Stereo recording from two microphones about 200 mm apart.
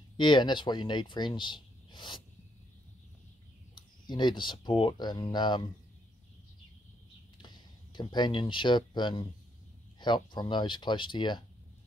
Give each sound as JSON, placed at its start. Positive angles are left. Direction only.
{"t": 0.2, "sound": "speech", "side_deg": 25}
{"t": 4.1, "sound": "speech", "side_deg": 20}
{"t": 7.4, "sound": "speech", "side_deg": 20}